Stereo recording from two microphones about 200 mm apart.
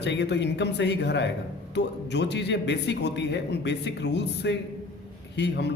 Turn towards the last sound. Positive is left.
turn(degrees=60)  # may be behind; listen again after turning